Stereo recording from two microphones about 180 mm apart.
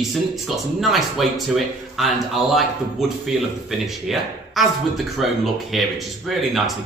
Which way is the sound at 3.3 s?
Centre (ahead or behind).